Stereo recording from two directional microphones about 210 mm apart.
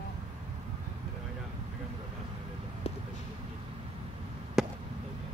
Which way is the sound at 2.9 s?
30° left (ahead or behind).